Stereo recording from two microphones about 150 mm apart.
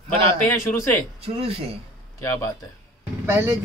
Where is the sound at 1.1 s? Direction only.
40° right (ahead or behind).